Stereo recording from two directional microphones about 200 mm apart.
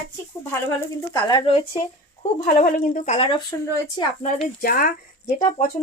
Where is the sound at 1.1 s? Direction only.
25° left (ahead or behind).